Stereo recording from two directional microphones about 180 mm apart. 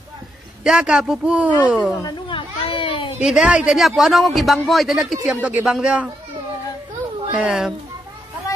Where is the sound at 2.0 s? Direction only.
30° left (ahead or behind).